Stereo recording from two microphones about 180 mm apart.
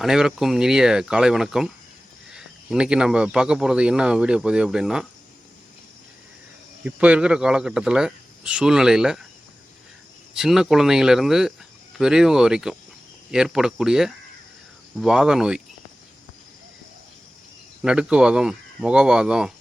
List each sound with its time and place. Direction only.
0.0 s speech: 5° right (ahead or behind)
6.8 s speech: 5° right (ahead or behind)
10.3 s speech: 5° right (ahead or behind)
17.8 s speech: 5° right (ahead or behind)